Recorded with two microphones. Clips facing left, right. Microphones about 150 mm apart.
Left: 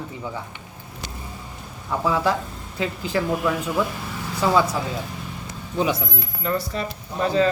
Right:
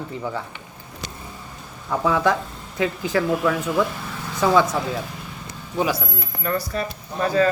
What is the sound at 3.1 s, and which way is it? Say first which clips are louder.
Speech: right 1 dB; 15° left (ahead or behind).